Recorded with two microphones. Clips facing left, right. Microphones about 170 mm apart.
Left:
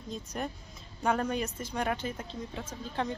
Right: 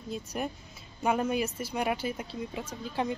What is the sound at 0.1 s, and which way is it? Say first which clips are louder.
Speech: right 2 dB; 10° right (ahead or behind).